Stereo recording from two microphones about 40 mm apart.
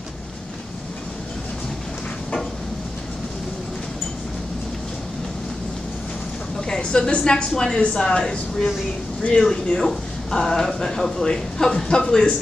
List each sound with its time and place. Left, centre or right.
6.7 s a woman's voice: left
8.2 s speech: centre
9.2 s speech: left
9.8 s a woman's voice: centre